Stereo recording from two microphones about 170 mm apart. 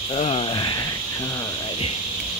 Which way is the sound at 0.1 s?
35° left (ahead or behind).